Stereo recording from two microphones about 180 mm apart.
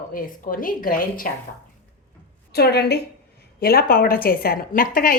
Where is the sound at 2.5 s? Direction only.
65° left (ahead or behind).